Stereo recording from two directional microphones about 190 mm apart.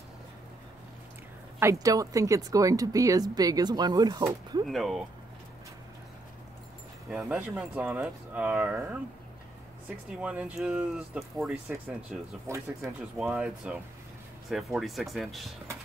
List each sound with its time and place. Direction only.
1.6 s speech: 15° right (ahead or behind)
4.6 s speech: centre (ahead or behind)
7.1 s speech: 5° right (ahead or behind)
12.1 s speech: 15° right (ahead or behind); by 15.5 s centre (ahead or behind)